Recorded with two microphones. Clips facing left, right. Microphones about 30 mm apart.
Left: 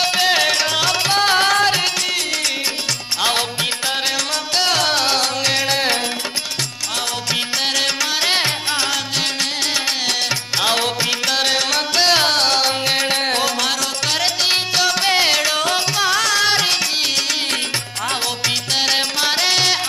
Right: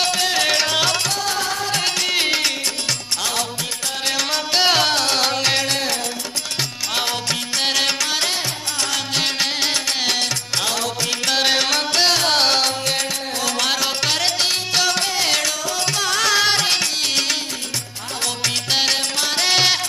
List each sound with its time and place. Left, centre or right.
0.1 s music: left
0.4 s music: centre
1.1 s music: left
2.1 s music: right
3.2 s music: left
4.3 s music: centre
4.8 s music: centre
7.5 s music: centre
11.2 s music: centre
12.6 s music: centre
13.6 s music: centre
15.5 s music: left
16.2 s music: centre
18.7 s music: centre